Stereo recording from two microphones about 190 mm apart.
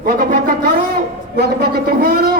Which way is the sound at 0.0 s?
50° right (ahead or behind).